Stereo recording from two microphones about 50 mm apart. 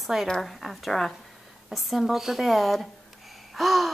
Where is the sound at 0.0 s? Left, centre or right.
Centre.